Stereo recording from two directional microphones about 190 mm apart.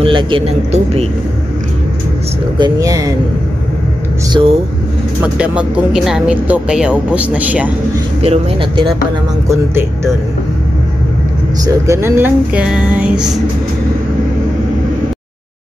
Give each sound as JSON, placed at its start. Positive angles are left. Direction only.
{"t": 0.0, "sound": "speech", "side_deg": -25}
{"t": 2.6, "sound": "speech", "side_deg": -20}
{"t": 4.3, "sound": "speech", "side_deg": -25}
{"t": 5.2, "sound": "speech", "side_deg": -5}
{"t": 8.2, "sound": "speech", "side_deg": -30}
{"t": 11.6, "sound": "speech", "side_deg": -15}